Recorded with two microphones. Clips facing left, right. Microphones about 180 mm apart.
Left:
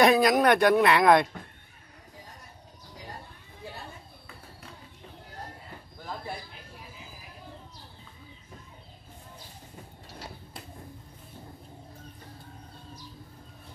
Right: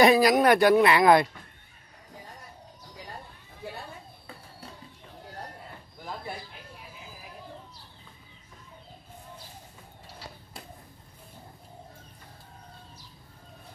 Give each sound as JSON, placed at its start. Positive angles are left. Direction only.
{"t": 0.0, "sound": "speech", "side_deg": 0}